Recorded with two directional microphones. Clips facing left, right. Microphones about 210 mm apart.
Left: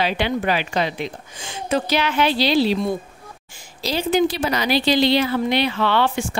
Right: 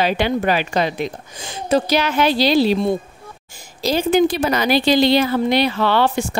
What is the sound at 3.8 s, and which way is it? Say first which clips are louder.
A woman's voice: right 3 dB; 50° right (ahead or behind).